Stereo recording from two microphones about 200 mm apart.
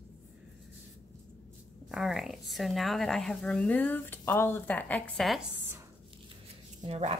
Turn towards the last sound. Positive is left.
turn(degrees=-30)  # may be behind; listen again after turning